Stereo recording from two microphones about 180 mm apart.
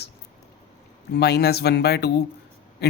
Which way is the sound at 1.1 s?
65° left (ahead or behind).